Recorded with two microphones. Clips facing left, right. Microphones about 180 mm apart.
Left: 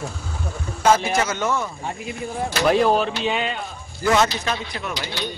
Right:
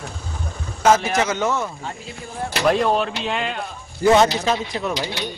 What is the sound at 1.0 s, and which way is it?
Speech, 5° right (ahead or behind).